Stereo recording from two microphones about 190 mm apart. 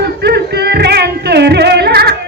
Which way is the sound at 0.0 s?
60° right (ahead or behind).